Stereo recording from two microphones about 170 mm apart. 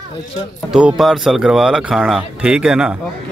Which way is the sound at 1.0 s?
Centre (ahead or behind).